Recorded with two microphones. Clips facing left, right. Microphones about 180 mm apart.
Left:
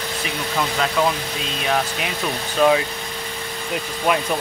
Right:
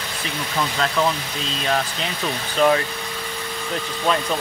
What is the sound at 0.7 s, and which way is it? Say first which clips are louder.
Speech: left 1 dB; 10° left (ahead or behind).